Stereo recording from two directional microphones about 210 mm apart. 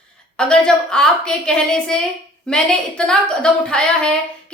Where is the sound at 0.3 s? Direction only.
5° left (ahead or behind).